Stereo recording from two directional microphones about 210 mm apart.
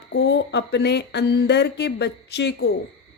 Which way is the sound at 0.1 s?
55° left (ahead or behind).